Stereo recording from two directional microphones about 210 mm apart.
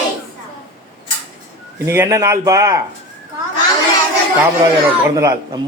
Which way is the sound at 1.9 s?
15° right (ahead or behind).